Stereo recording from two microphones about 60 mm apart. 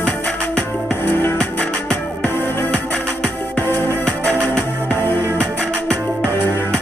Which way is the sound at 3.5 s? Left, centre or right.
Left.